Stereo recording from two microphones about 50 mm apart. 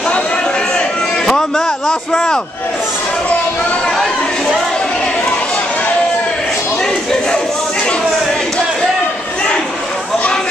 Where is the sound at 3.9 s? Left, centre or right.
Centre.